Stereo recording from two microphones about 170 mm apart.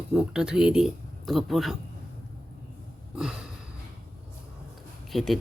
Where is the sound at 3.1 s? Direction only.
5° right (ahead or behind).